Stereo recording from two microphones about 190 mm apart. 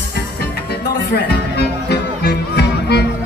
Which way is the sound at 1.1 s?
60° left (ahead or behind).